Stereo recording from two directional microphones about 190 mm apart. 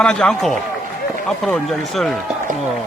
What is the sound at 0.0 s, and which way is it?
Speech, 5° left (ahead or behind).